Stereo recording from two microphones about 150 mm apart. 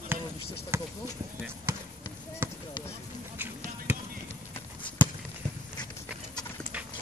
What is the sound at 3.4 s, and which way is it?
Basketball bounce, 15° right (ahead or behind).